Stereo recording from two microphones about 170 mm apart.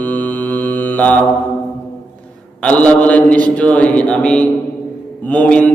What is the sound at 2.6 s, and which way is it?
A man's voice, 10° left (ahead or behind).